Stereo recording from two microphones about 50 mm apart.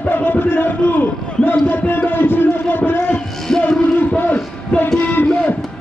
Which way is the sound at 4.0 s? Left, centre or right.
Left.